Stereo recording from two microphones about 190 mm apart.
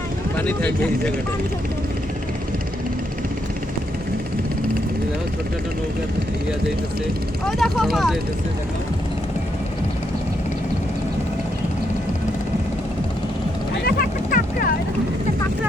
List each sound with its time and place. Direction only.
0.3 s speech: 5° left (ahead or behind)
7.4 s speech: centre (ahead or behind)
13.8 s vehicle: 50° left (ahead or behind)